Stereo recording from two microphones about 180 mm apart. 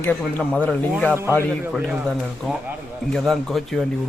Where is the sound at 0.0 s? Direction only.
10° left (ahead or behind).